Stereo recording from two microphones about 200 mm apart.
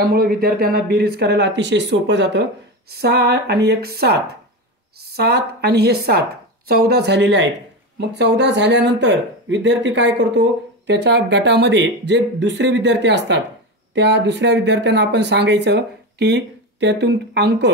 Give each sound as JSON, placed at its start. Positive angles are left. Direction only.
{"t": 0.1, "sound": "speech", "side_deg": -50}